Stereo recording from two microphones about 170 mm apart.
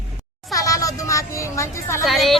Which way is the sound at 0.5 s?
20° left (ahead or behind).